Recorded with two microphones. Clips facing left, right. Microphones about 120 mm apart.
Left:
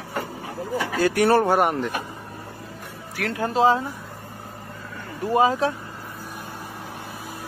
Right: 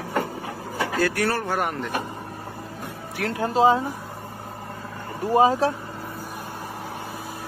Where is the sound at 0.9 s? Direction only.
15° left (ahead or behind).